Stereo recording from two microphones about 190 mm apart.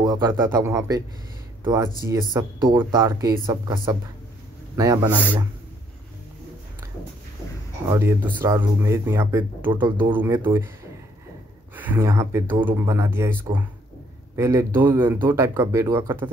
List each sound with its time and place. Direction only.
0.0 s speech: 20° right (ahead or behind)
7.9 s speech: 15° right (ahead or behind)
9.8 s speech: 25° right (ahead or behind)
10.1 s speech: 10° right (ahead or behind)
11.7 s speech: 10° right (ahead or behind)